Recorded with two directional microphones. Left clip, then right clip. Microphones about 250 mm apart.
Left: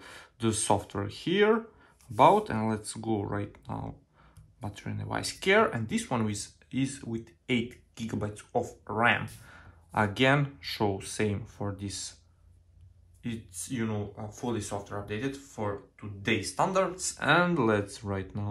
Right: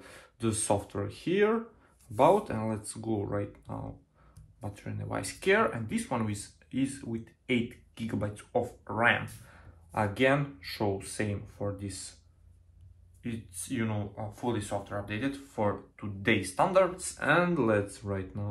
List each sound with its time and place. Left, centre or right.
0.0 s speech: left
13.2 s speech: centre